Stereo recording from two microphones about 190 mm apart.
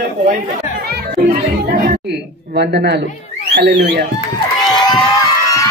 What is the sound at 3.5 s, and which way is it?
Speech, 60° right (ahead or behind).